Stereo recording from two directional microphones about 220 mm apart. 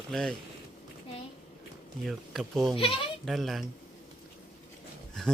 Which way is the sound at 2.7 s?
25° left (ahead or behind).